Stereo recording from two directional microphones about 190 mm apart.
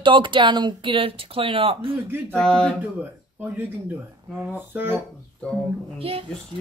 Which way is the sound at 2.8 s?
10° right (ahead or behind).